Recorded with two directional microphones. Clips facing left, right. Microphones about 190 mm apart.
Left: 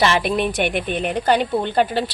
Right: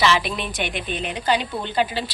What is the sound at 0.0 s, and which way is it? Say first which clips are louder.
A woman's voice: left 3 dB; 50° left (ahead or behind).